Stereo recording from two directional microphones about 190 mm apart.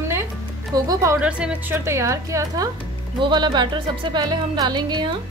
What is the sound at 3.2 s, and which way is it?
Music, 25° right (ahead or behind).